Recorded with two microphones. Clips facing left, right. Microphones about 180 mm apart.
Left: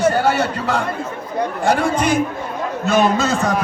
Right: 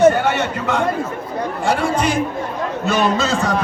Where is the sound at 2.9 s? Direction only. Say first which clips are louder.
Left 2 dB; 50° left (ahead or behind).